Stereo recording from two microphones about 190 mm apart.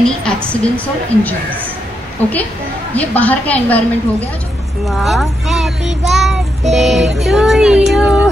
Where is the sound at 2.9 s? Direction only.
10° left (ahead or behind).